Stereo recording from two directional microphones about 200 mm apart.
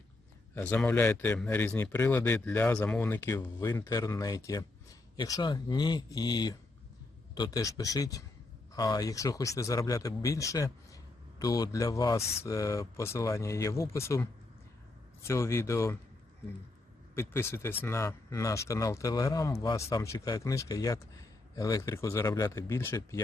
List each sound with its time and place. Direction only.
0.5 s a man's voice: 5° left (ahead or behind)
17.2 s a man's voice: 10° left (ahead or behind)